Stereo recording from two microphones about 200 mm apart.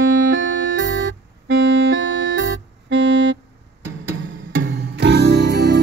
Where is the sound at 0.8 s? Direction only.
60° right (ahead or behind).